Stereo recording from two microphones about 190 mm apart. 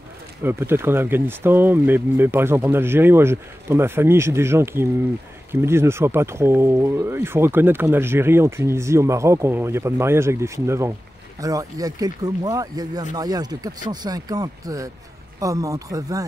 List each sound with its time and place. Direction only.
0.4 s speech: 10° right (ahead or behind)